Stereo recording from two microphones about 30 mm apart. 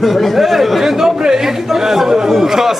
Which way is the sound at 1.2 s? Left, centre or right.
Centre.